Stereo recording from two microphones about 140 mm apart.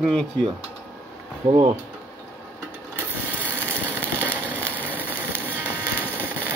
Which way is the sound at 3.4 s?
10° left (ahead or behind).